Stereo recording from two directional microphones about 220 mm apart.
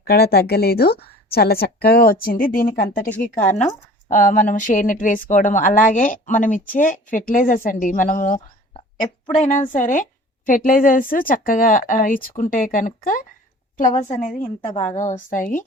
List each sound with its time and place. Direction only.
0.0 s a woman's voice: 45° left (ahead or behind)
4.1 s a woman's voice: 35° left (ahead or behind)